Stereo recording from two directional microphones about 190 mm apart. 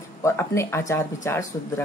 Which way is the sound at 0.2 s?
15° left (ahead or behind).